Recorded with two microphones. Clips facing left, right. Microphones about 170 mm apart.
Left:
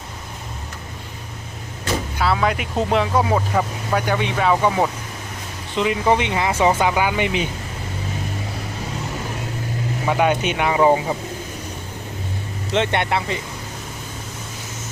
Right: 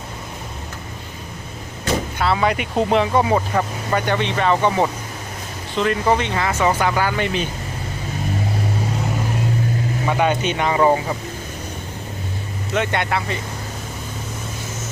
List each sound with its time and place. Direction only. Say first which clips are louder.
2.1 s speech: even; centre (ahead or behind)
10.1 s speech: left 1 dB; 5° left (ahead or behind)
12.7 s speech: left 1 dB; 25° left (ahead or behind)